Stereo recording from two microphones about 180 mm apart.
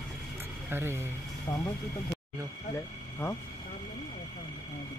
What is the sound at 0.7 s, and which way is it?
Speech, 15° right (ahead or behind).